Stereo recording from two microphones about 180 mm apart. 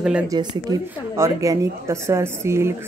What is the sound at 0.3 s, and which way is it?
A woman's voice, 20° right (ahead or behind).